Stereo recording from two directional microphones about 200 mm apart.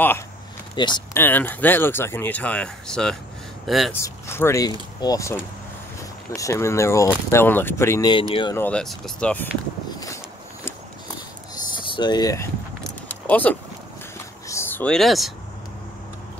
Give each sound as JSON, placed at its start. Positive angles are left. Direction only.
{"t": 0.7, "sound": "speech", "side_deg": 20}
{"t": 1.1, "sound": "speech", "side_deg": 10}
{"t": 3.9, "sound": "speech", "side_deg": 10}
{"t": 8.5, "sound": "speech", "side_deg": 5}
{"t": 11.9, "sound": "speech", "side_deg": 20}
{"t": 13.1, "sound": "keys jangling", "side_deg": 10}
{"t": 14.5, "sound": "a sound", "side_deg": 10}